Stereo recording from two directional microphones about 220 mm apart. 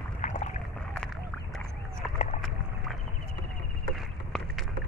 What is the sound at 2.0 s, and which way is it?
Run, centre (ahead or behind).